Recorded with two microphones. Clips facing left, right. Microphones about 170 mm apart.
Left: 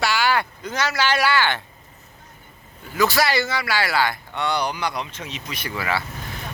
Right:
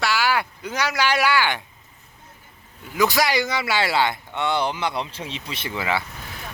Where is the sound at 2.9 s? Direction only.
15° right (ahead or behind).